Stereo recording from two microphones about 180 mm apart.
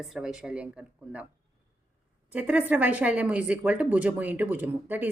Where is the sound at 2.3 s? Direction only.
10° right (ahead or behind).